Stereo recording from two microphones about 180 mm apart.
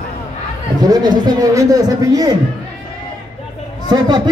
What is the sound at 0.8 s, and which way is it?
Speech, 20° right (ahead or behind).